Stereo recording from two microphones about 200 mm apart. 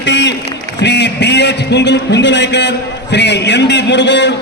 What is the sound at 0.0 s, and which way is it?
A man's voice, 65° left (ahead or behind).